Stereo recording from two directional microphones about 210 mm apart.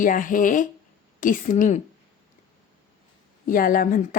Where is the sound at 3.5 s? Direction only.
40° left (ahead or behind).